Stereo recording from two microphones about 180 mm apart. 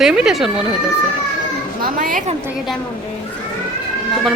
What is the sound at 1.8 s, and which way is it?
Speech, 50° right (ahead or behind).